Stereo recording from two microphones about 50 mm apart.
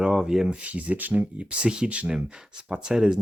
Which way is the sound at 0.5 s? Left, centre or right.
Right.